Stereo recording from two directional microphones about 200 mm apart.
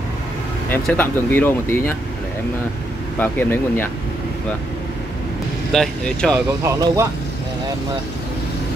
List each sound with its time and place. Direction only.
0.7 s speech: 10° left (ahead or behind)
3.2 s speech: 10° left (ahead or behind)
5.7 s speech: 5° left (ahead or behind)
6.6 s speech: 15° right (ahead or behind)